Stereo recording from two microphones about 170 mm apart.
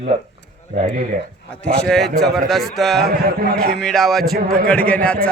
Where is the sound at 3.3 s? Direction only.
60° right (ahead or behind).